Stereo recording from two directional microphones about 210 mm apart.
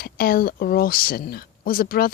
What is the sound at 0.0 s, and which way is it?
Speech, 45° left (ahead or behind).